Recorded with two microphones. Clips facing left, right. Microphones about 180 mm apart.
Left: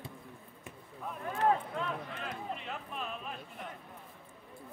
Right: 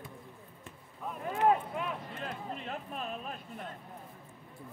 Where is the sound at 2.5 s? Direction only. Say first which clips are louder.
Right 2 dB; 40° right (ahead or behind).